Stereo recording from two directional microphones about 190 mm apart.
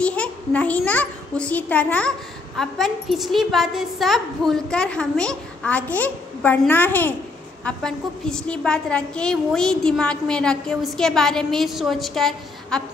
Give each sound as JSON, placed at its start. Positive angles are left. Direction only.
{"t": 0.0, "sound": "a child's voice", "side_deg": 5}